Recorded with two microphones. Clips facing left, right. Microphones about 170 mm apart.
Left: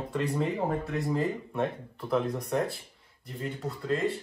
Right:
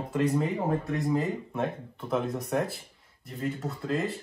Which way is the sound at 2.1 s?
Centre (ahead or behind).